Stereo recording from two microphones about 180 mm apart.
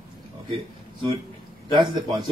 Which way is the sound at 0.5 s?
25° right (ahead or behind).